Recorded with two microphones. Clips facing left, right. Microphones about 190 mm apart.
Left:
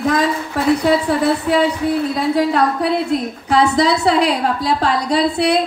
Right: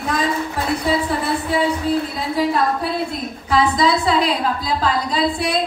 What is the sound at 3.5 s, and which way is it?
A woman's voice, 70° left (ahead or behind).